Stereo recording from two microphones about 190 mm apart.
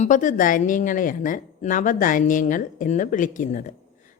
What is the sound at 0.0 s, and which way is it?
Speech, 40° left (ahead or behind).